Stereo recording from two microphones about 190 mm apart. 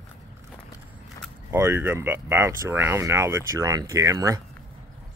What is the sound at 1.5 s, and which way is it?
Speech, 10° right (ahead or behind).